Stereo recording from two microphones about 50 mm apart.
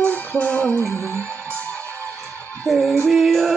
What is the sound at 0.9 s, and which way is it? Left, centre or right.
Music, left.